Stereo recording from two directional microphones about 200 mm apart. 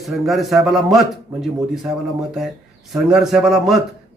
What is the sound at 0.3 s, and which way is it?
Speech, centre (ahead or behind).